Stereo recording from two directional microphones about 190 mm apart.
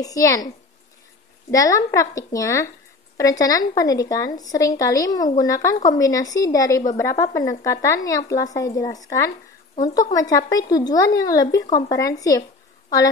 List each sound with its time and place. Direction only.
0.0 s speech: 20° left (ahead or behind)
1.5 s speech: 15° left (ahead or behind)